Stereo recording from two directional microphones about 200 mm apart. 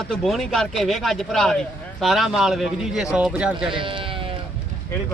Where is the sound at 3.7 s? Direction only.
25° right (ahead or behind).